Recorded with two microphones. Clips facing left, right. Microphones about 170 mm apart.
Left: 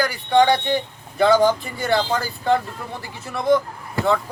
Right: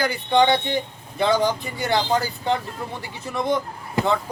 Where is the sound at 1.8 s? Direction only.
20° right (ahead or behind).